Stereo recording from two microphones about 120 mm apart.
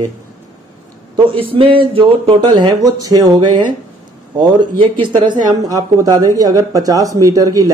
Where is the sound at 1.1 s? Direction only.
50° right (ahead or behind); by 3.4 s 30° right (ahead or behind).